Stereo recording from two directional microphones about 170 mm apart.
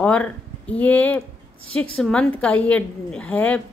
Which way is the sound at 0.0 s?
5° left (ahead or behind).